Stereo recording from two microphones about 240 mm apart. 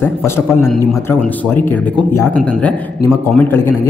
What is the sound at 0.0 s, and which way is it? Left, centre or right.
A man's voice, centre.